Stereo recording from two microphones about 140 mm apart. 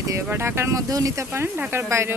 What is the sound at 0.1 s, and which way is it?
Speech, 20° right (ahead or behind).